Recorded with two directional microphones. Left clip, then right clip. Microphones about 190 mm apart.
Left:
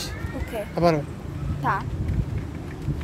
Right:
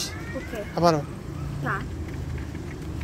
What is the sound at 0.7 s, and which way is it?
Speech, 20° left (ahead or behind).